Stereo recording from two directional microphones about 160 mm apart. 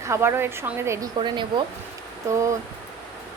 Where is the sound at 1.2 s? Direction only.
30° right (ahead or behind).